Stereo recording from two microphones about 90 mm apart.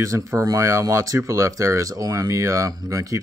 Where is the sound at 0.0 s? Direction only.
35° right (ahead or behind).